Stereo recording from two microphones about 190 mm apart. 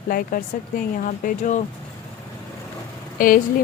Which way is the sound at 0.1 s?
50° left (ahead or behind).